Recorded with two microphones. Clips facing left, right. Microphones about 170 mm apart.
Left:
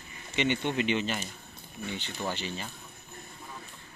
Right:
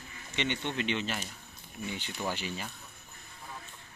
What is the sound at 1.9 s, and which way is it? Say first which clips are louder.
Speech: left 1 dB; 10° right (ahead or behind).